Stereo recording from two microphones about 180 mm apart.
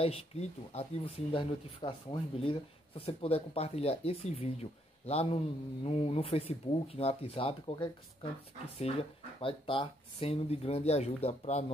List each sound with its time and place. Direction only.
0.0 s speech: 35° left (ahead or behind)